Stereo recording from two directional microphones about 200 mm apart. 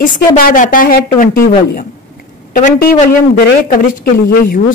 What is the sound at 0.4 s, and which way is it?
A man's voice, 45° left (ahead or behind).